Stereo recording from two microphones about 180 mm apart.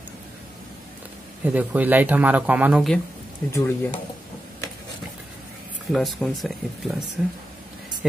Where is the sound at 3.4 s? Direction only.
15° left (ahead or behind).